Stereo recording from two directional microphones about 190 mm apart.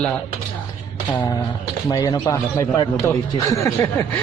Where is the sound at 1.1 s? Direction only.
25° left (ahead or behind).